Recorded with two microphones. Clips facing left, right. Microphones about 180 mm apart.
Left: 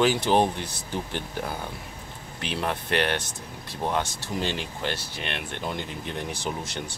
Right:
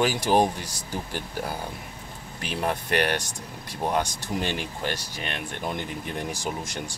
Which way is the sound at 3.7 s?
15° right (ahead or behind).